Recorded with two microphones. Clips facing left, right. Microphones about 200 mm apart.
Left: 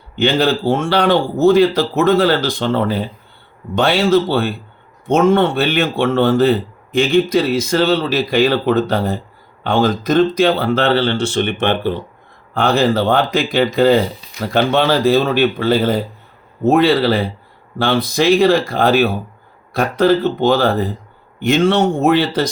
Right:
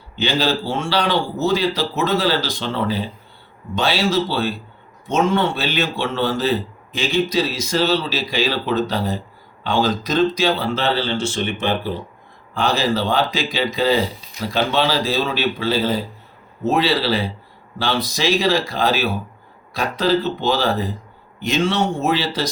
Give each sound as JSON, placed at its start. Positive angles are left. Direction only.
{"t": 0.2, "sound": "speech", "side_deg": 55}